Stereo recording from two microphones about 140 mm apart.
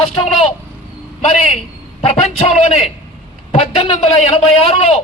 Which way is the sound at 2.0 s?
45° left (ahead or behind).